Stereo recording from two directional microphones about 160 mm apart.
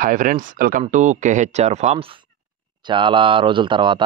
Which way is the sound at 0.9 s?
50° right (ahead or behind).